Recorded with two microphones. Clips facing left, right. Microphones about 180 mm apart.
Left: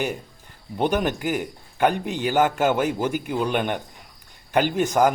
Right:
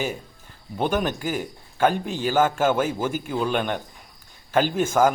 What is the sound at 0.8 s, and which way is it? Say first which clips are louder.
A man's voice: left 1 dB; 20° left (ahead or behind).